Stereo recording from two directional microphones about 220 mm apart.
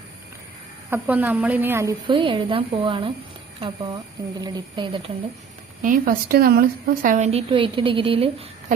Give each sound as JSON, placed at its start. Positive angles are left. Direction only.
{"t": 0.9, "sound": "a woman's voice", "side_deg": -10}
{"t": 4.4, "sound": "a woman's voice", "side_deg": -20}
{"t": 5.8, "sound": "a woman's voice", "side_deg": -40}